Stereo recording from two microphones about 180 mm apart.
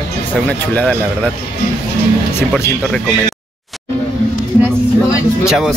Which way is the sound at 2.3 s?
15° left (ahead or behind).